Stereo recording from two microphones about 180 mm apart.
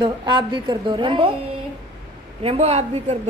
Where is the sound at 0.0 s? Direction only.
25° right (ahead or behind).